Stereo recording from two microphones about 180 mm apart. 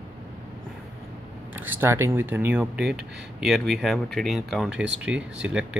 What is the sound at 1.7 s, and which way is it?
Speech, 15° right (ahead or behind).